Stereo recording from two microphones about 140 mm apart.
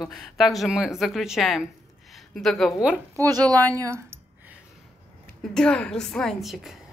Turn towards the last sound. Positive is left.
turn(degrees=0)  # may be behind; listen again after turning